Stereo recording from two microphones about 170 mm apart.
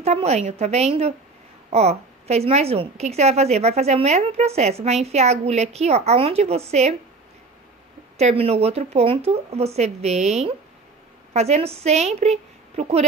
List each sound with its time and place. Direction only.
0.0 s a woman's voice: 40° right (ahead or behind)
8.2 s a woman's voice: 40° right (ahead or behind)